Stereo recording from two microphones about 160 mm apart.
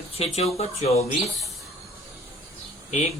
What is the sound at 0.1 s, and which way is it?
Speech, 40° left (ahead or behind).